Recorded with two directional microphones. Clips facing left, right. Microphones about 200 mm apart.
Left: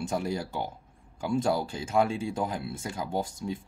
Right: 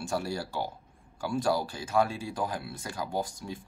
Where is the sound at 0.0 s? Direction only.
20° left (ahead or behind).